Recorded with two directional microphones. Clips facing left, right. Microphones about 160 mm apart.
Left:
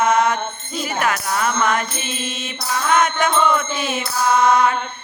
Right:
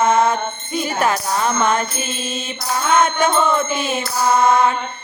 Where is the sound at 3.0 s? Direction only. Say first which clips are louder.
Right 2 dB; 25° right (ahead or behind).